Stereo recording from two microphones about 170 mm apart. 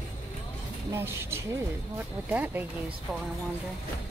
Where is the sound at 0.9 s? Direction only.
15° right (ahead or behind).